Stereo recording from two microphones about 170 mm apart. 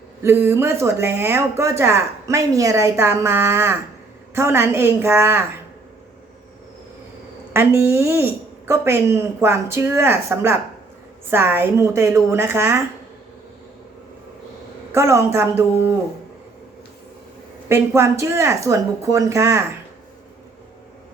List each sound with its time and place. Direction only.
0.2 s speech: 15° right (ahead or behind)
7.5 s speech: 15° right (ahead or behind)
14.9 s speech: 15° right (ahead or behind)
17.7 s speech: 15° right (ahead or behind)